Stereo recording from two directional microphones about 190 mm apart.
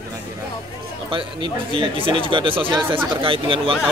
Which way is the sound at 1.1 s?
25° right (ahead or behind).